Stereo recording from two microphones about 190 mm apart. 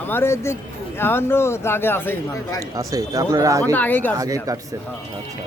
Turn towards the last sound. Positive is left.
turn(degrees=-20)  # may be behind; listen again after turning